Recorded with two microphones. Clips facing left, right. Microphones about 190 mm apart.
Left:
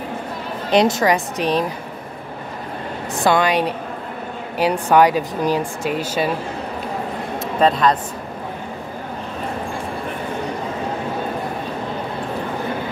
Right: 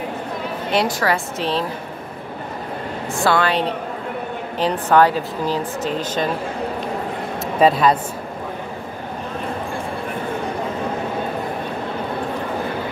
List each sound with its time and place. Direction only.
0.7 s a woman's voice: 20° left (ahead or behind)
3.3 s a woman's voice: 15° left (ahead or behind)
7.6 s speech: 5° right (ahead or behind)